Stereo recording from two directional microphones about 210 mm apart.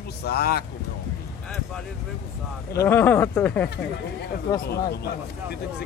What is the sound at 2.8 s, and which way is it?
Speech, 10° left (ahead or behind).